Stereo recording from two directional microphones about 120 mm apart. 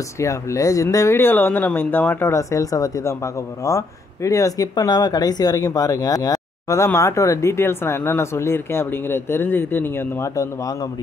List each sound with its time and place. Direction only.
0.2 s speech: 25° left (ahead or behind)